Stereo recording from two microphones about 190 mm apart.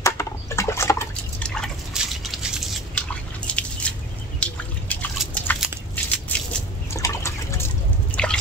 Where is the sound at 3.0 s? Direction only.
5° left (ahead or behind).